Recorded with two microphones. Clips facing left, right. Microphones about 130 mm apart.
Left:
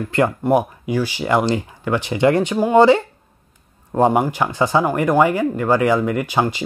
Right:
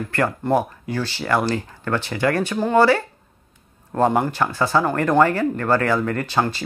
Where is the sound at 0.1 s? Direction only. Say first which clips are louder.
Left 4 dB; 15° left (ahead or behind).